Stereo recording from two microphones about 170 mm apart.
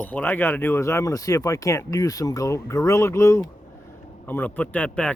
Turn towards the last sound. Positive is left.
turn(degrees=5)  # may be behind; listen again after turning